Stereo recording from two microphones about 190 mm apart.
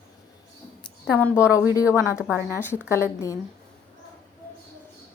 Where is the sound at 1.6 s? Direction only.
15° right (ahead or behind).